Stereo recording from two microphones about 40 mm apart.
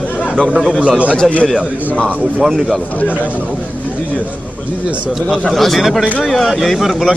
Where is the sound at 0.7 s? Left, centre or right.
Right.